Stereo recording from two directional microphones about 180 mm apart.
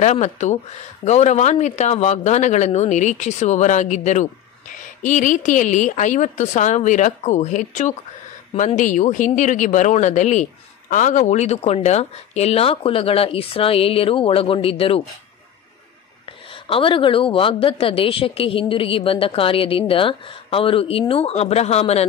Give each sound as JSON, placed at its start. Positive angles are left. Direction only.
{"t": 0.0, "sound": "a woman's voice", "side_deg": 40}
{"t": 16.6, "sound": "speech", "side_deg": 30}